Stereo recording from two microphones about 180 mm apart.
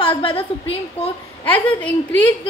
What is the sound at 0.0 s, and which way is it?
A woman's voice, 30° left (ahead or behind).